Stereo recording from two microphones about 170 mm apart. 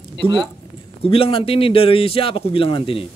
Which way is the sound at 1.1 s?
35° left (ahead or behind).